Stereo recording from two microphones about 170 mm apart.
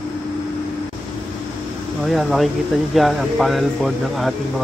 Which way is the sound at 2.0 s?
Centre (ahead or behind).